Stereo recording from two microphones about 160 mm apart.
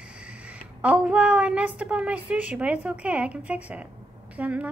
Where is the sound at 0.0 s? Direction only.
5° right (ahead or behind).